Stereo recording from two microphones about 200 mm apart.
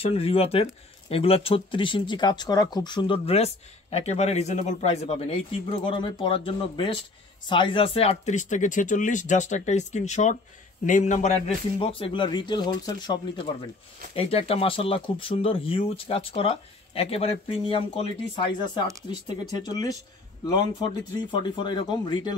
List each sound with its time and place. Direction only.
0.0 s speech: 30° left (ahead or behind)